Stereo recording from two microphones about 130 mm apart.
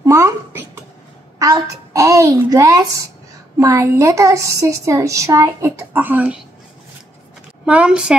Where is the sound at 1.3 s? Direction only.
25° right (ahead or behind); by 6.4 s 10° right (ahead or behind).